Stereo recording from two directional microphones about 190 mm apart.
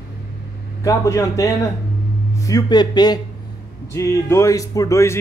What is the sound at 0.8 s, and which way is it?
A man's voice, 15° left (ahead or behind).